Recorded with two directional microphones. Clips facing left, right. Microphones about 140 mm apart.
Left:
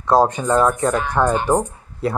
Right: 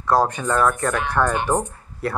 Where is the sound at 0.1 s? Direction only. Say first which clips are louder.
Left 4 dB; 20° left (ahead or behind).